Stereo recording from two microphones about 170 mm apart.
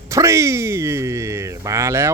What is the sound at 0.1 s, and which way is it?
Speech, 15° right (ahead or behind).